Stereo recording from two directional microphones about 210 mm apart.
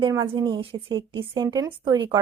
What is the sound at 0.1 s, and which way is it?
Speech, 20° right (ahead or behind).